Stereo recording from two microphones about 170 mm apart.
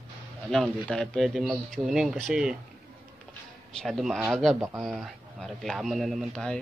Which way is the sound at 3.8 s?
Centre (ahead or behind).